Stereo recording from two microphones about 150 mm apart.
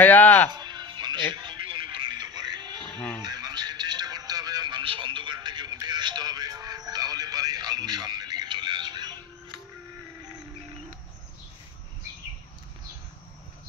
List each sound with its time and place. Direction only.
0.0 s music: 10° left (ahead or behind)
0.5 s music: 30° right (ahead or behind)